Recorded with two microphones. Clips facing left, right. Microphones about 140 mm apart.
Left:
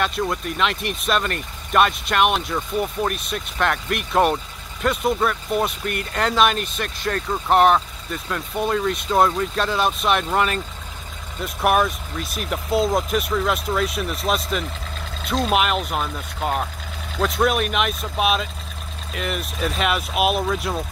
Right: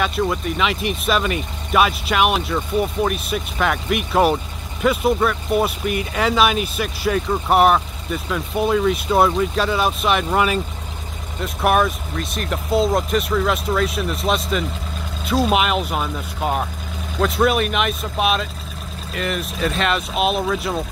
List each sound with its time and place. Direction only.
0.0 s speech: centre (ahead or behind)